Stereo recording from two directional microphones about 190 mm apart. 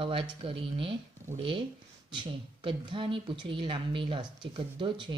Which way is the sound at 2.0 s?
25° right (ahead or behind).